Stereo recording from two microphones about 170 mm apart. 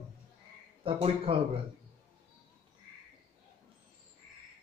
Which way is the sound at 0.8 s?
35° right (ahead or behind).